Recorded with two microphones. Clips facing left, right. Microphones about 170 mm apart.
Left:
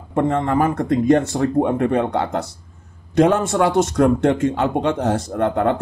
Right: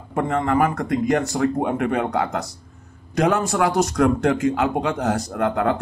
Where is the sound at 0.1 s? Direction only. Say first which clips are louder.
Left 2 dB; 30° left (ahead or behind).